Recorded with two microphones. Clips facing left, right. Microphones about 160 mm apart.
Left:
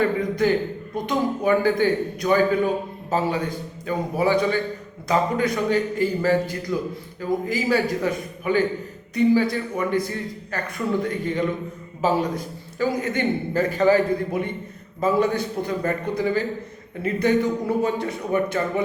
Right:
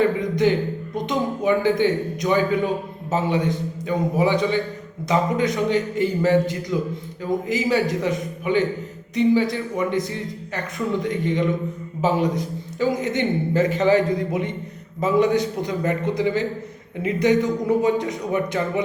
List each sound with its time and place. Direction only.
0.2 s a man's voice: 20° right (ahead or behind)